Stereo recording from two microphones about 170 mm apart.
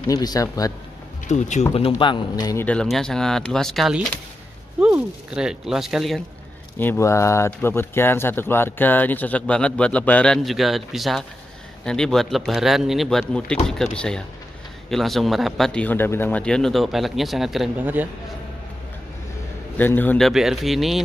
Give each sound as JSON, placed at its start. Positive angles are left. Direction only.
{"t": 0.0, "sound": "speech", "side_deg": 20}
{"t": 1.3, "sound": "speech", "side_deg": 40}
{"t": 2.6, "sound": "speech", "side_deg": 5}
{"t": 6.8, "sound": "speech", "side_deg": 15}
{"t": 19.8, "sound": "speech", "side_deg": 10}
{"t": 20.2, "sound": "speech", "side_deg": 0}